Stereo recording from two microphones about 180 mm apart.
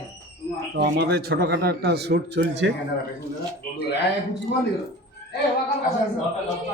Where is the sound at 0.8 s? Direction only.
65° right (ahead or behind).